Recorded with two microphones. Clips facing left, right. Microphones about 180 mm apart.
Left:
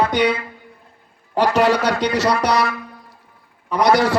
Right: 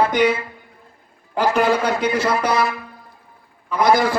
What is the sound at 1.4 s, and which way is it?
A man's voice, 75° left (ahead or behind).